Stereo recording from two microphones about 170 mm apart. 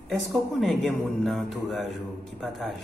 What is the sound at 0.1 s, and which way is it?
Speech, centre (ahead or behind).